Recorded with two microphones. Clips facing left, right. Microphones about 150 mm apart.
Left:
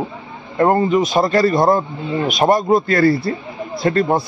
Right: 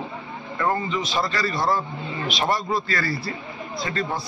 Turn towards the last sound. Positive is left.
turn(degrees=55)  # may be behind; listen again after turning